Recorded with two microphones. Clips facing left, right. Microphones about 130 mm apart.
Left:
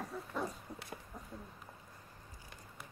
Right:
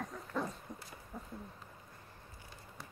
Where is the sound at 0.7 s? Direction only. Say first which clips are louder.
Even; 10° left (ahead or behind).